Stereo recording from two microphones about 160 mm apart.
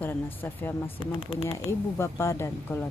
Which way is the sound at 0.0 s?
10° left (ahead or behind).